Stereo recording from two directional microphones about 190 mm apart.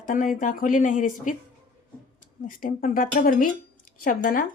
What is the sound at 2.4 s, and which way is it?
A woman's voice, 45° left (ahead or behind).